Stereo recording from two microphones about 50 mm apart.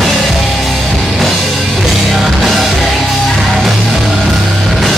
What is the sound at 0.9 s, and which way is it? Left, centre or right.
Music, centre.